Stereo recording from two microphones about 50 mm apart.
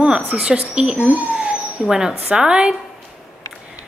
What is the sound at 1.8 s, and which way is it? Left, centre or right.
Speech, centre.